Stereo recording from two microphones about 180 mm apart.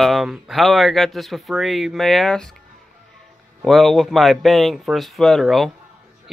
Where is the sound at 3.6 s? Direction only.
Centre (ahead or behind).